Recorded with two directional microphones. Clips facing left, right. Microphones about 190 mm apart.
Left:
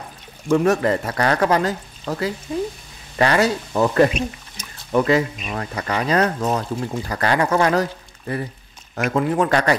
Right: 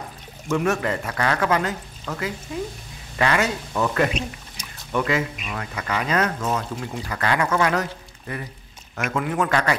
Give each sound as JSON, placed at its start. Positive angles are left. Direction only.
{"t": 0.5, "sound": "speech", "side_deg": 35}